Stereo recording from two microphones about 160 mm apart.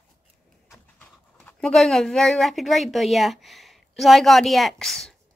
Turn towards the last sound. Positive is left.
turn(degrees=5)  # may be behind; listen again after turning